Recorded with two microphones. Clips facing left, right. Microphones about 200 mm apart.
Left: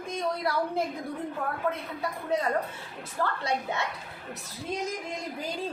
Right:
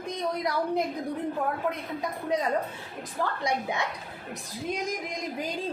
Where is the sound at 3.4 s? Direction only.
15° right (ahead or behind).